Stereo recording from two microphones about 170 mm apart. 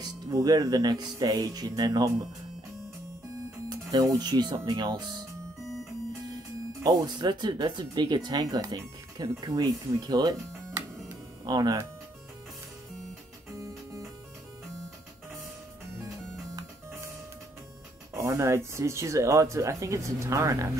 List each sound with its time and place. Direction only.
0.0 s speech: 20° right (ahead or behind)
3.6 s speech: 25° right (ahead or behind)
6.8 s speech: 25° right (ahead or behind)
13.6 s music: 15° right (ahead or behind)
18.1 s speech: 15° right (ahead or behind)